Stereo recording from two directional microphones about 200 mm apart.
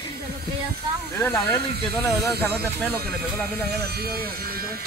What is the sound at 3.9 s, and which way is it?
Speech, 50° right (ahead or behind).